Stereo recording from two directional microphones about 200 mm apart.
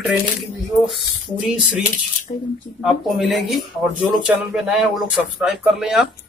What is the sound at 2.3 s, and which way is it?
Speech, 35° left (ahead or behind).